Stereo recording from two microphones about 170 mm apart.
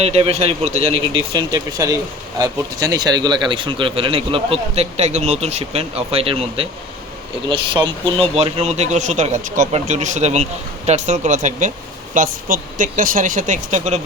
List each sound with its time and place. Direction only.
0.0 s speech: 40° right (ahead or behind)